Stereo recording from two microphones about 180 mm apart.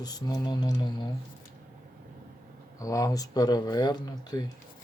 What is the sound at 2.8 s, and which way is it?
Speech, 20° left (ahead or behind).